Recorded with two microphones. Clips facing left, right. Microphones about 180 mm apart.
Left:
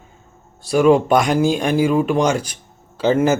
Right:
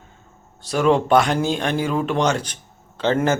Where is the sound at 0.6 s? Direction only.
10° left (ahead or behind).